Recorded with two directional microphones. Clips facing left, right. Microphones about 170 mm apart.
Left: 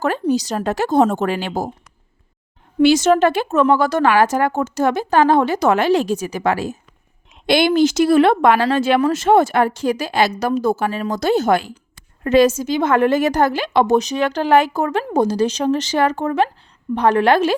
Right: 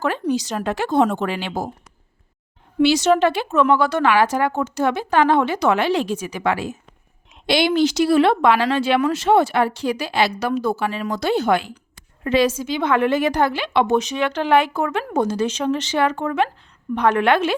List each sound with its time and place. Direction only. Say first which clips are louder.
0.0 s a woman's voice: left 3 dB; 40° left (ahead or behind)
2.8 s a woman's voice: left 3 dB; 50° left (ahead or behind)